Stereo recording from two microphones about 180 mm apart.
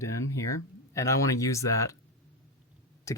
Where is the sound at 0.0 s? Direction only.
15° left (ahead or behind).